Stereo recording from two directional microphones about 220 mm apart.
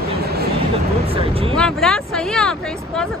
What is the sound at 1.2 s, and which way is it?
Speech, 25° right (ahead or behind).